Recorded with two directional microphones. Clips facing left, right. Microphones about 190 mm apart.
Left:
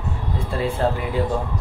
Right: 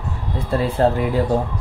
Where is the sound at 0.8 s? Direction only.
40° right (ahead or behind).